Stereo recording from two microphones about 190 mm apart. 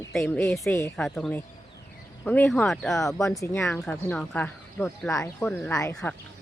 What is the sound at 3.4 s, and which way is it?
Speech, 15° left (ahead or behind).